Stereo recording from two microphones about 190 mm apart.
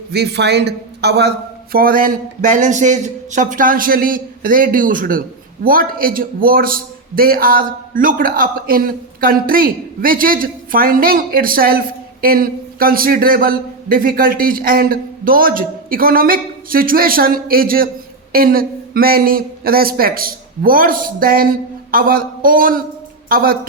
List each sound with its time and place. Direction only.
0.1 s a man's voice: 60° right (ahead or behind)
1.7 s a man's voice: 50° right (ahead or behind)